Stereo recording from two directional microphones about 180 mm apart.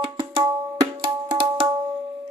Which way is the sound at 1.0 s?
30° right (ahead or behind).